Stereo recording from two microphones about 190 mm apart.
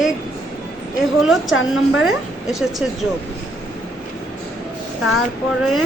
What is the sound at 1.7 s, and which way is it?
A woman's voice, centre (ahead or behind).